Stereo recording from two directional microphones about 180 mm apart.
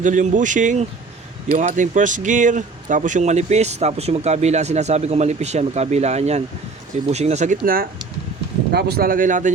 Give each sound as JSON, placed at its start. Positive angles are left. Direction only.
{"t": 0.0, "sound": "speech", "side_deg": -45}